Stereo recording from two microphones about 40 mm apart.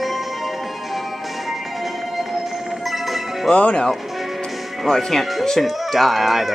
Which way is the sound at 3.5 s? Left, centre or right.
Left.